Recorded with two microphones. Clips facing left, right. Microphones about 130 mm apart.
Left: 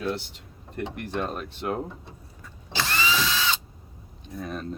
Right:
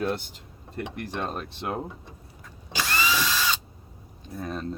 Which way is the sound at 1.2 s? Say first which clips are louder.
Even; 30° right (ahead or behind).